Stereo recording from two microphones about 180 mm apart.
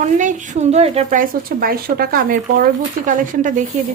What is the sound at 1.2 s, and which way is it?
Speech, 55° right (ahead or behind).